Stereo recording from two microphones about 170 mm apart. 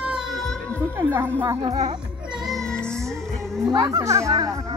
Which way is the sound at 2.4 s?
Centre (ahead or behind).